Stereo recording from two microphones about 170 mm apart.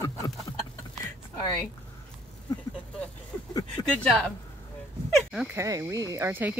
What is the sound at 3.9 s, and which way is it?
Speech, 5° left (ahead or behind).